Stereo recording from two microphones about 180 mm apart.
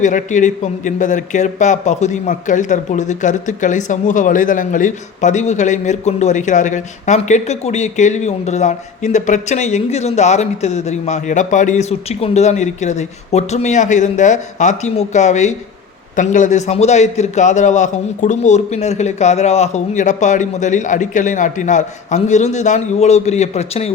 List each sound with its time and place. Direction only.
0.0 s a man's voice: 45° left (ahead or behind)